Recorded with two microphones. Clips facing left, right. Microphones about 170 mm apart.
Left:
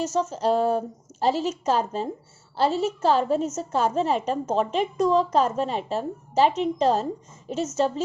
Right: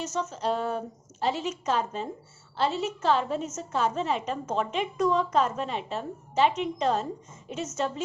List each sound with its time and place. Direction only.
0.0 s a woman's voice: 30° left (ahead or behind)